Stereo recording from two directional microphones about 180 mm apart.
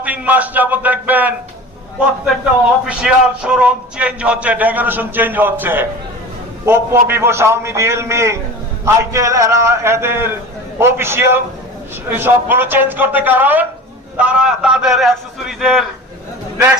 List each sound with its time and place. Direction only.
0.0 s a man's voice: 10° right (ahead or behind)
2.8 s a man's voice: 5° right (ahead or behind)